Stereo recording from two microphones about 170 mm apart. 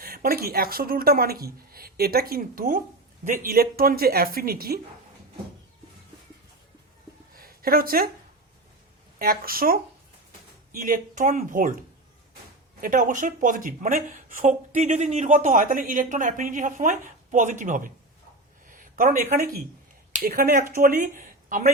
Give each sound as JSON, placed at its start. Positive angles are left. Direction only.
{"t": 0.0, "sound": "speech", "side_deg": -60}
{"t": 7.3, "sound": "a sound", "side_deg": -60}
{"t": 9.1, "sound": "speech", "side_deg": -55}
{"t": 12.8, "sound": "speech", "side_deg": -50}